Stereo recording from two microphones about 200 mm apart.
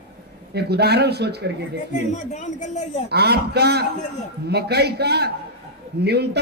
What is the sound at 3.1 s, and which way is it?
A man's voice, 55° right (ahead or behind).